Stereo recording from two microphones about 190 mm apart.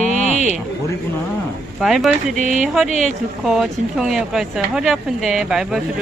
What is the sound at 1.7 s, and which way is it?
Speech, centre (ahead or behind).